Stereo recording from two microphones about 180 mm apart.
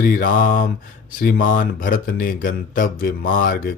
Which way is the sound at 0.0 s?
50° left (ahead or behind).